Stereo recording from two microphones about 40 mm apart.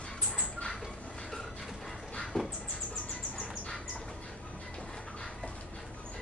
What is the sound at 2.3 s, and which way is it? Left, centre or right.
Dog, left.